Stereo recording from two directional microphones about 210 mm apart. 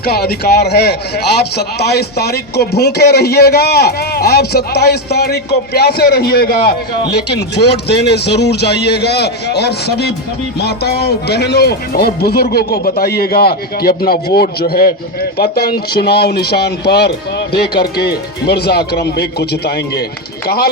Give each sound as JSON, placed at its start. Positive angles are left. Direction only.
{"t": 0.0, "sound": "speech", "side_deg": 50}